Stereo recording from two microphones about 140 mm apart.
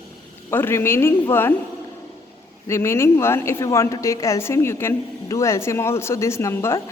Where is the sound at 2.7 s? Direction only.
20° left (ahead or behind).